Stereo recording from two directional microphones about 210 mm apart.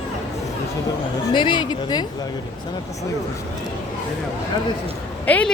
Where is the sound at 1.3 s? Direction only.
20° left (ahead or behind).